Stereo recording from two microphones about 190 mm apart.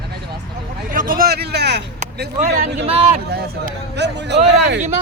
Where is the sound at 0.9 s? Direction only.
45° right (ahead or behind).